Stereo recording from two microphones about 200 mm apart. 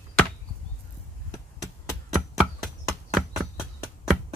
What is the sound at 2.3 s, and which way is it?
Horse, centre (ahead or behind).